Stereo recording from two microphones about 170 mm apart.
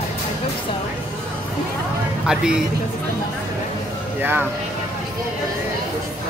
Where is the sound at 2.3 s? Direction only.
5° right (ahead or behind).